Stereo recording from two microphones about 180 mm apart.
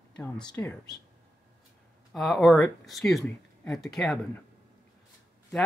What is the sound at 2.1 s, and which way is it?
Speech, centre (ahead or behind).